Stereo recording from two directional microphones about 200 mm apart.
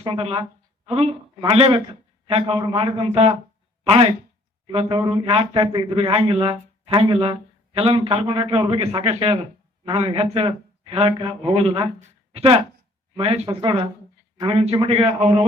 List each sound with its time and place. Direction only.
0.0 s speech: 25° right (ahead or behind)